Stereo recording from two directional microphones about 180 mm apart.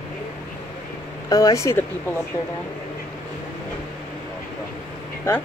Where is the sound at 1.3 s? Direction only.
20° left (ahead or behind).